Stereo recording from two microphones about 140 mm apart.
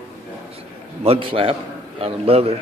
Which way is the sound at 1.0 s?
40° right (ahead or behind).